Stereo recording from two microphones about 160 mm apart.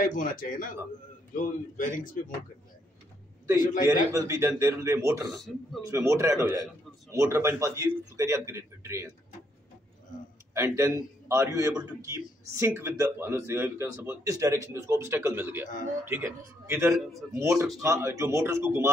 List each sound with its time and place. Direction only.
0.0 s a man's voice: 55° left (ahead or behind)
4.1 s speech: 20° right (ahead or behind)
5.3 s speech: centre (ahead or behind)
5.9 s speech: 20° right (ahead or behind)
10.5 s speech: 15° right (ahead or behind)